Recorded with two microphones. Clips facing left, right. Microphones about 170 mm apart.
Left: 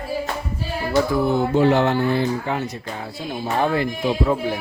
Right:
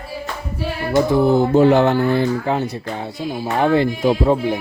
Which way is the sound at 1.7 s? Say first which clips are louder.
Right 4 dB; 50° right (ahead or behind).